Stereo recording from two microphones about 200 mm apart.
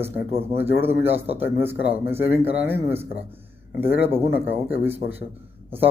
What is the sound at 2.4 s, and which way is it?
Speech, 10° right (ahead or behind).